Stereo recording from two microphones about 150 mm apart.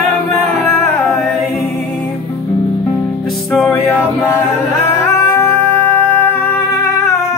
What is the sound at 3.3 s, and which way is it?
Music, centre (ahead or behind).